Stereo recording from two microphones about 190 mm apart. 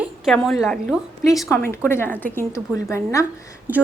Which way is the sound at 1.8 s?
10° left (ahead or behind).